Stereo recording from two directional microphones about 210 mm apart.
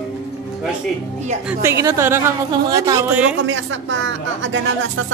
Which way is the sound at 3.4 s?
65° right (ahead or behind).